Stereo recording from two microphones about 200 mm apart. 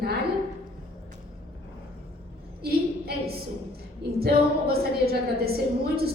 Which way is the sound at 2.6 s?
50° right (ahead or behind).